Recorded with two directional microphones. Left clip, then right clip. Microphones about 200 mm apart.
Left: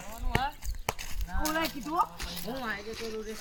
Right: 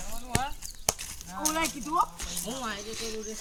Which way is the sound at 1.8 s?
45° right (ahead or behind).